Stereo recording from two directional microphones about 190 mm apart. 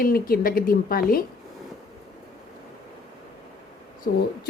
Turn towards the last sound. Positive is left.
turn(degrees=50)  # may be behind; listen again after turning